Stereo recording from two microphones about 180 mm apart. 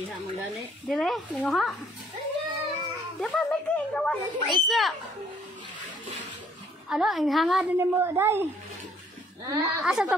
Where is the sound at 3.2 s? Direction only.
5° left (ahead or behind).